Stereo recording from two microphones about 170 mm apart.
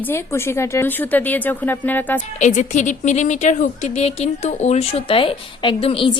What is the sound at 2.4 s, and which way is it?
A woman's voice, 45° left (ahead or behind).